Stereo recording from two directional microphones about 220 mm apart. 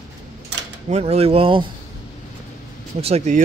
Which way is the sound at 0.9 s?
30° right (ahead or behind).